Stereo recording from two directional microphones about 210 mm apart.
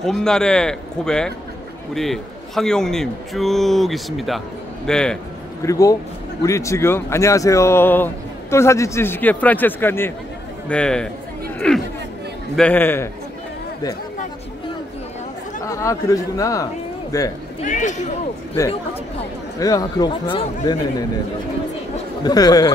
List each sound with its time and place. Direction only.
0.0 s a man's voice: 5° left (ahead or behind)
5.6 s a man's voice: 15° left (ahead or behind)
11.6 s chatter: 5° left (ahead or behind)
12.5 s speech: 10° left (ahead or behind)
15.6 s speech: 15° left (ahead or behind)
17.6 s speech: 35° left (ahead or behind)
19.6 s speech: 20° left (ahead or behind)
21.9 s chatter: 20° left (ahead or behind)